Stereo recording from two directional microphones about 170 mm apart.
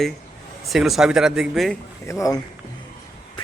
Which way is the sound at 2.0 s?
20° left (ahead or behind).